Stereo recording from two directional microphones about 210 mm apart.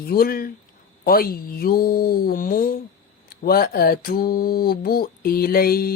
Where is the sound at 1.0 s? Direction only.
45° left (ahead or behind).